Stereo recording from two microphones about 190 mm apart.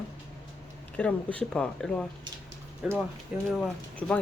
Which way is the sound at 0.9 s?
5° left (ahead or behind).